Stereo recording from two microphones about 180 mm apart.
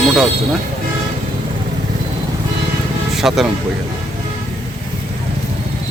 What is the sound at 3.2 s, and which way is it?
Speech, centre (ahead or behind).